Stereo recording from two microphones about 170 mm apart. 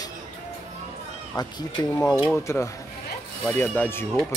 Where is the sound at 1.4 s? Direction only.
20° left (ahead or behind).